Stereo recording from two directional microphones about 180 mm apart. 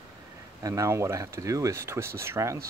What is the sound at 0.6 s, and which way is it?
Speech, 20° right (ahead or behind).